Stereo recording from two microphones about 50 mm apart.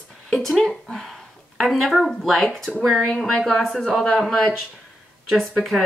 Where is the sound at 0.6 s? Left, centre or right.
Centre.